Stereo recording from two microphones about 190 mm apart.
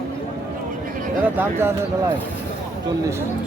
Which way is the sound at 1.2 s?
10° right (ahead or behind).